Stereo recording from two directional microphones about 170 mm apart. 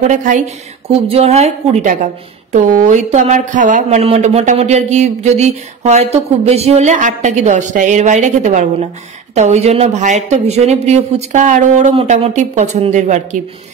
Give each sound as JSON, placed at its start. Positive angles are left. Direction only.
{"t": 0.1, "sound": "speech", "side_deg": -45}